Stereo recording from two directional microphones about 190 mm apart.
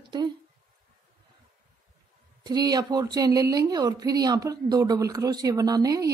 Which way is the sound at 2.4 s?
20° right (ahead or behind).